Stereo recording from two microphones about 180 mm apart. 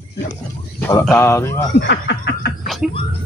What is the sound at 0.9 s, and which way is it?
Speech, 15° left (ahead or behind).